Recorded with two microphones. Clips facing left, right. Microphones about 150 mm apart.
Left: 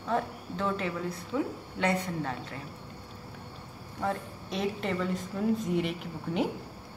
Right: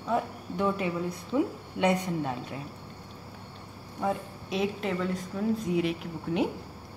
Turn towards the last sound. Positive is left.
turn(degrees=0)  # may be behind; listen again after turning